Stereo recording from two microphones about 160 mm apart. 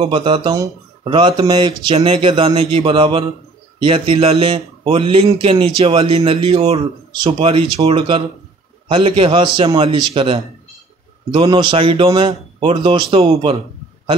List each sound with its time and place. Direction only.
0.0 s a man's voice: 30° right (ahead or behind)